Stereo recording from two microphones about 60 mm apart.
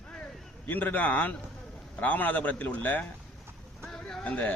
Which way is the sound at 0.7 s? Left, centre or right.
Left.